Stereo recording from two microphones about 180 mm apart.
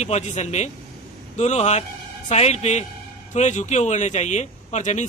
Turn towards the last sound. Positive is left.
turn(degrees=40)  # may be behind; listen again after turning